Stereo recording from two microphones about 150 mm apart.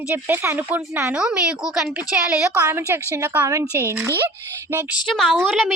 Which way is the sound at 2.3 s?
15° right (ahead or behind).